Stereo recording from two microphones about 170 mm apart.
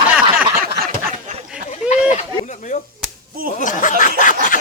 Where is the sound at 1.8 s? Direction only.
5° right (ahead or behind).